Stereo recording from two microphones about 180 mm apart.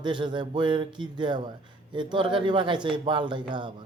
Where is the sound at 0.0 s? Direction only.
25° right (ahead or behind).